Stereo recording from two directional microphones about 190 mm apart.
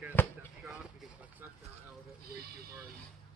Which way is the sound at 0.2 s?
10° left (ahead or behind).